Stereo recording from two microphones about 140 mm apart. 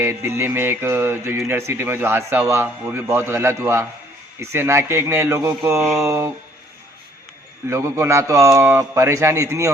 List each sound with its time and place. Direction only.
0.0 s music: 15° right (ahead or behind)
2.8 s a man's voice: 20° right (ahead or behind)
7.7 s a man's voice: 20° right (ahead or behind)